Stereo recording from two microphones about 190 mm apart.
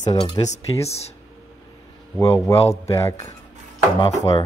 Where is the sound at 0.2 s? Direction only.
30° left (ahead or behind).